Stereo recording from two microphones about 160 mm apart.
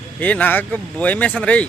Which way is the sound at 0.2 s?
10° left (ahead or behind).